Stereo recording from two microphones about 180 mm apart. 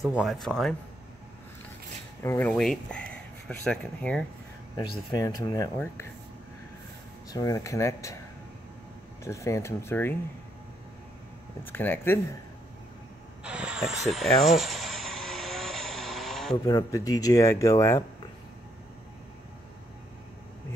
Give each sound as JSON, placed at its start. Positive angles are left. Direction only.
{"t": 0.0, "sound": "speech", "side_deg": 0}
{"t": 2.2, "sound": "speech", "side_deg": 10}
{"t": 5.1, "sound": "speech", "side_deg": 20}
{"t": 7.2, "sound": "speech", "side_deg": 20}
{"t": 9.2, "sound": "speech", "side_deg": 15}
{"t": 11.6, "sound": "speech", "side_deg": 10}
{"t": 13.4, "sound": "a sound", "side_deg": -5}
{"t": 16.6, "sound": "speech", "side_deg": 20}